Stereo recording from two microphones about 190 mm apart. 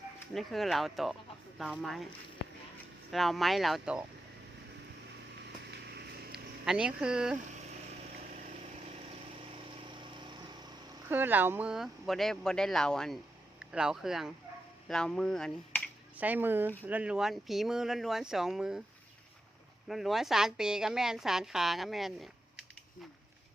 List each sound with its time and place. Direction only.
0.3 s speech: centre (ahead or behind)
3.1 s speech: centre (ahead or behind)
5.7 s vehicle: 60° right (ahead or behind)
6.7 s speech: 5° right (ahead or behind)
10.0 s vehicle: 25° right (ahead or behind)
11.1 s speech: 10° right (ahead or behind)
16.1 s speech: 10° right (ahead or behind)
19.9 s speech: centre (ahead or behind)